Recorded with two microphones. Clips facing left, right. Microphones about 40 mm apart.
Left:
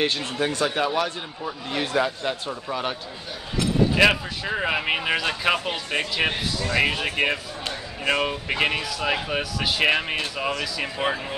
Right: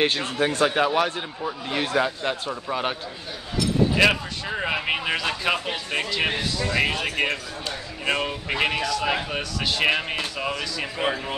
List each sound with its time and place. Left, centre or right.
0.0 s a man's voice: centre
1.4 s a man's voice: centre
3.9 s speech: centre
7.1 s speech: centre